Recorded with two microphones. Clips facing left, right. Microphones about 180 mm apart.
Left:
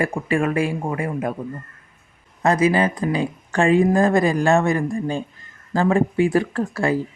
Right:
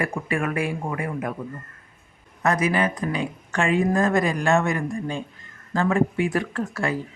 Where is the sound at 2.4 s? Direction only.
30° left (ahead or behind).